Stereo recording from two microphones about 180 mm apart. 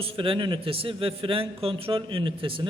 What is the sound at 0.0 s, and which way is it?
A man's voice, 30° right (ahead or behind).